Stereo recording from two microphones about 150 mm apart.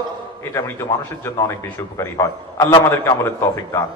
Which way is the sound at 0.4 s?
20° left (ahead or behind).